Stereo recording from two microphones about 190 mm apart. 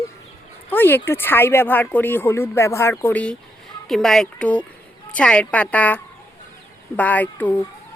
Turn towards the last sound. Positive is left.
turn(degrees=10)  # may be behind; listen again after turning